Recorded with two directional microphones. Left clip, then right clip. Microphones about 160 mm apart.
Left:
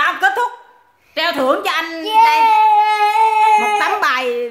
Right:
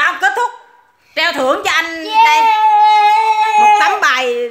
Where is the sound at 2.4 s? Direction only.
25° left (ahead or behind).